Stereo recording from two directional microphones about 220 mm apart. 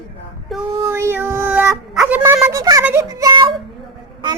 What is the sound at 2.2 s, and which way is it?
Child singing, 15° right (ahead or behind).